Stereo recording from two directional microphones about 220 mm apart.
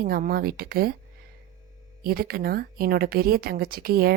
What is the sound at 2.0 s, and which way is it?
A woman's voice, 45° right (ahead or behind).